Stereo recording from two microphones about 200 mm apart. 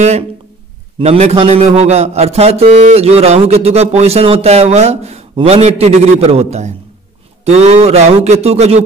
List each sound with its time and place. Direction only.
0.9 s a man's voice: 30° right (ahead or behind)